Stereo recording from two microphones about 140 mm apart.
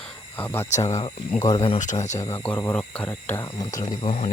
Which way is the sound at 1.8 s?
60° left (ahead or behind).